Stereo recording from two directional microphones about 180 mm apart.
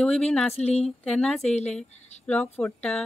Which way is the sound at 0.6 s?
35° left (ahead or behind).